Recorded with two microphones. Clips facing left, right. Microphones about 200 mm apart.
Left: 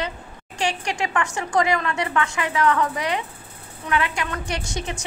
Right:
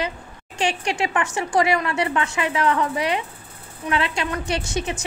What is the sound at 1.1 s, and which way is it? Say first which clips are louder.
A woman's voice: left 1 dB; 20° right (ahead or behind).